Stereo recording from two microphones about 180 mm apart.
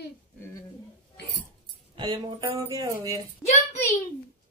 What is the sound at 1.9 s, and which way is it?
Speech, 25° right (ahead or behind).